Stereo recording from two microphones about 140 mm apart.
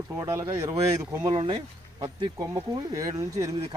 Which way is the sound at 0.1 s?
20° right (ahead or behind).